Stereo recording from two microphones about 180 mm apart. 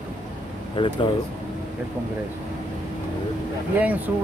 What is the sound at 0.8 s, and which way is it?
Speech, 25° left (ahead or behind).